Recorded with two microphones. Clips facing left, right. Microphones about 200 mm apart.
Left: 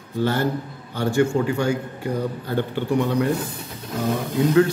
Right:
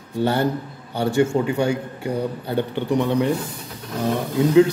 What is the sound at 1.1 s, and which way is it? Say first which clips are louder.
Speech: right 1 dB; 20° right (ahead or behind).